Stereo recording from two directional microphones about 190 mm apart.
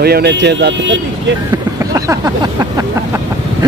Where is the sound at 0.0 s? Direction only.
55° right (ahead or behind).